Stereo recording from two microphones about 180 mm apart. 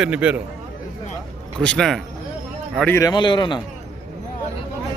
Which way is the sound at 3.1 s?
25° left (ahead or behind).